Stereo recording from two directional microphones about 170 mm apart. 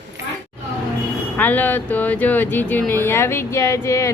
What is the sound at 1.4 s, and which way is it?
Speech, 10° left (ahead or behind).